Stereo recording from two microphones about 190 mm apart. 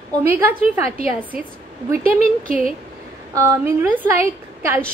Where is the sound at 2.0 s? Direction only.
45° right (ahead or behind).